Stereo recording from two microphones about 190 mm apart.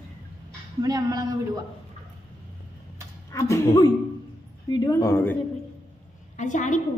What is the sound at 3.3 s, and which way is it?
A man's voice, 15° left (ahead or behind).